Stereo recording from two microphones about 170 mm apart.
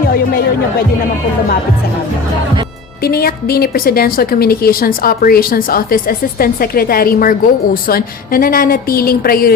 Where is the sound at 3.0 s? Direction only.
65° left (ahead or behind).